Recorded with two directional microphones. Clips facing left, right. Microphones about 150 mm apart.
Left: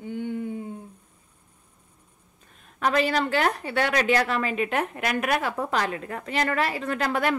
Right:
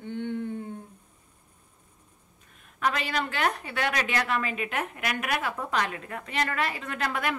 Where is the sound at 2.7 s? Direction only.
35° left (ahead or behind).